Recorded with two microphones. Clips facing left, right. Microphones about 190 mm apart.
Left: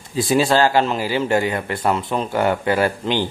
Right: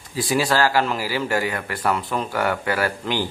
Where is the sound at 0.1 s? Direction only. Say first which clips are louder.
Left 4 dB; 25° left (ahead or behind).